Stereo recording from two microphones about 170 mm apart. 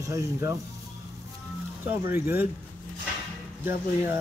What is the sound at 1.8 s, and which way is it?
Speech, 15° right (ahead or behind).